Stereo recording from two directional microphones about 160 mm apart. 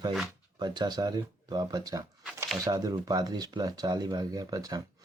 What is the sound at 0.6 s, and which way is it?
Speech, 25° right (ahead or behind).